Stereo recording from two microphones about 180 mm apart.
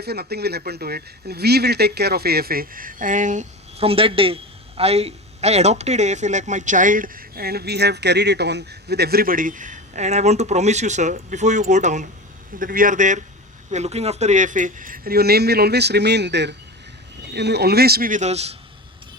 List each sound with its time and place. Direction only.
0.0 s speech: 60° right (ahead or behind); by 18.5 s 35° right (ahead or behind)